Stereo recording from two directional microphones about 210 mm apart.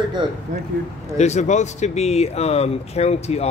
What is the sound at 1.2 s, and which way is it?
Speech, 35° left (ahead or behind).